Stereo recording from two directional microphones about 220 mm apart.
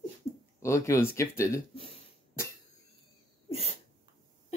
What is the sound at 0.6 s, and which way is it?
Speech, 10° left (ahead or behind).